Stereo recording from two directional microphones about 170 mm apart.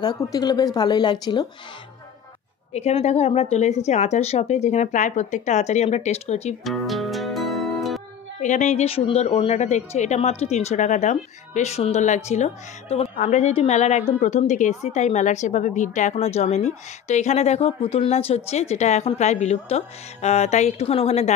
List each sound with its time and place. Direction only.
0.0 s speech: 20° left (ahead or behind)
2.7 s a woman's voice: 40° left (ahead or behind)
6.6 s music: centre (ahead or behind)
8.4 s a woman's voice: 45° left (ahead or behind)